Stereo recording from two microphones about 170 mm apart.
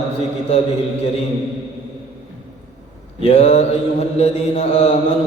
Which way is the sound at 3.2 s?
40° left (ahead or behind).